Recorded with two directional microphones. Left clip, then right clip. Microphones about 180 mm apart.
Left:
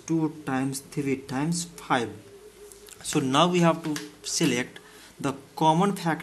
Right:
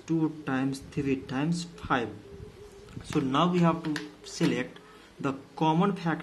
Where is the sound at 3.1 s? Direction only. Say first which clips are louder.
Left 4 dB; 25° left (ahead or behind).